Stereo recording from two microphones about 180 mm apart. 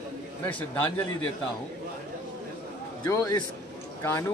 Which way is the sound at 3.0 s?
20° left (ahead or behind).